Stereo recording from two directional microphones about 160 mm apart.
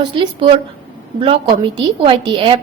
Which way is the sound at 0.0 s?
30° right (ahead or behind).